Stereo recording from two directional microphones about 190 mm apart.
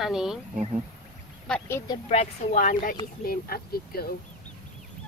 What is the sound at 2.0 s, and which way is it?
Speech, 40° left (ahead or behind).